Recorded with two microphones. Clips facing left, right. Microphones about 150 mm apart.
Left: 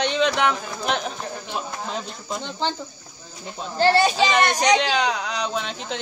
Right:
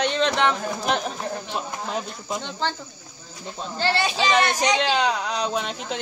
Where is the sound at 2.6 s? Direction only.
15° left (ahead or behind).